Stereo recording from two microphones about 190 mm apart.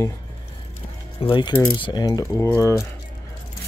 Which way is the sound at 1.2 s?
25° left (ahead or behind).